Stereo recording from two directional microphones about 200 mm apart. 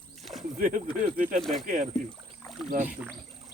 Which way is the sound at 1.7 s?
35° right (ahead or behind).